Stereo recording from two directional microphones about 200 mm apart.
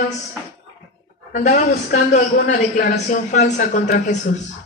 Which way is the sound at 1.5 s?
35° left (ahead or behind).